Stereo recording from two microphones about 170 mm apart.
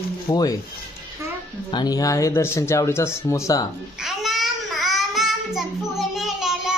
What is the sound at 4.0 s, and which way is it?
Child singing, centre (ahead or behind).